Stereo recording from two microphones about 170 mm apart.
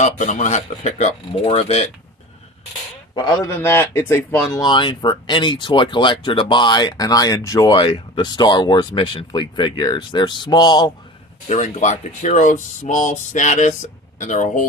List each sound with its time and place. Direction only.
0.0 s speech: 45° left (ahead or behind)
3.2 s a man's voice: 20° left (ahead or behind)
11.4 s speech: 45° left (ahead or behind)